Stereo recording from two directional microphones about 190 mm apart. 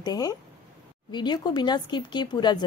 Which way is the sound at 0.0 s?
20° left (ahead or behind).